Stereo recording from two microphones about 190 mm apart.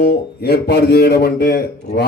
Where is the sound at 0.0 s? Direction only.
60° left (ahead or behind).